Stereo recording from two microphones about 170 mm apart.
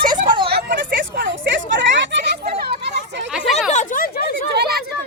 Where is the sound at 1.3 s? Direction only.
90° right.